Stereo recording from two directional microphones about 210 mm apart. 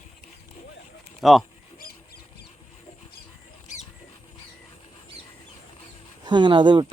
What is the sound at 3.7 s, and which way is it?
Rodents, 35° left (ahead or behind).